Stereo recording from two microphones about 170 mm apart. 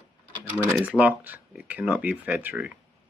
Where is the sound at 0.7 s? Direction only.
10° right (ahead or behind).